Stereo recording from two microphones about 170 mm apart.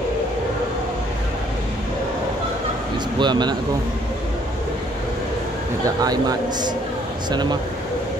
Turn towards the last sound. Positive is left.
turn(degrees=-25)  # may be behind; listen again after turning